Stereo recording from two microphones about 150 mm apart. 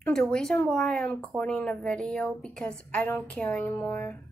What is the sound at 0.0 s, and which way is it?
Speech, 5° left (ahead or behind).